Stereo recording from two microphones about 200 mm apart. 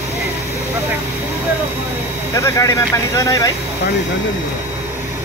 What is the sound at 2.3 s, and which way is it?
Speech, 15° left (ahead or behind).